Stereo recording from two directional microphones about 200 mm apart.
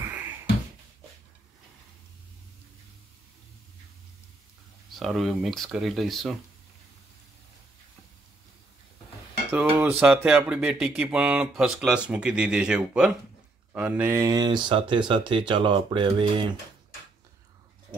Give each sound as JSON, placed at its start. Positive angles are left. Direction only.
{"t": 4.9, "sound": "speech", "side_deg": 0}
{"t": 9.5, "sound": "speech", "side_deg": -10}